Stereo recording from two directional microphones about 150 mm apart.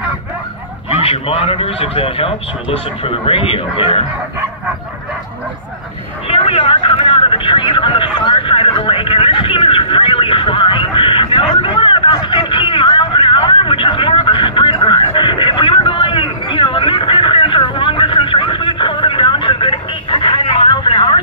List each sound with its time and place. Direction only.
1.0 s speech: 40° left (ahead or behind)
6.2 s vehicle: 40° left (ahead or behind)